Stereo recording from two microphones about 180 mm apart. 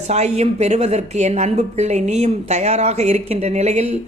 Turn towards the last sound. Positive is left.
turn(degrees=-35)  # may be behind; listen again after turning